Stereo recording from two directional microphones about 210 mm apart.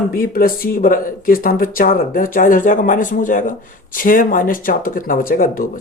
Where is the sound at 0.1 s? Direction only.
45° left (ahead or behind).